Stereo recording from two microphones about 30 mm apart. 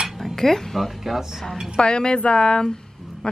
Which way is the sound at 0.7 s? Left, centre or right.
Centre.